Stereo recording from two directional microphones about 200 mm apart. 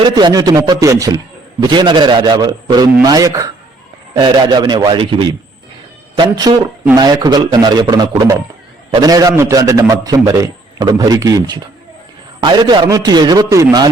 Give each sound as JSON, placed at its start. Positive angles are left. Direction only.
{"t": 0.0, "sound": "a man's voice", "side_deg": -20}